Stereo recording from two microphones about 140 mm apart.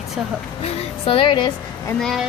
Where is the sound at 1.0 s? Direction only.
35° left (ahead or behind).